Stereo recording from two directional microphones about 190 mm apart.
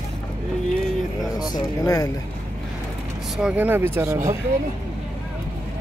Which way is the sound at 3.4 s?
5° right (ahead or behind).